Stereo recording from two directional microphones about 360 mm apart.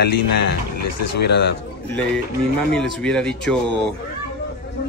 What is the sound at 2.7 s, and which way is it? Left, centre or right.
Speech, centre.